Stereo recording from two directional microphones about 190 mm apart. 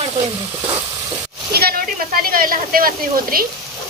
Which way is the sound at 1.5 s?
55° right (ahead or behind).